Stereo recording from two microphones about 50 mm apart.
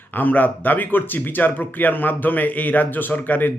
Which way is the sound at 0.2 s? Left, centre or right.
Left.